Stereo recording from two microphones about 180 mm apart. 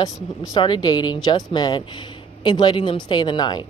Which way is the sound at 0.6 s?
25° left (ahead or behind).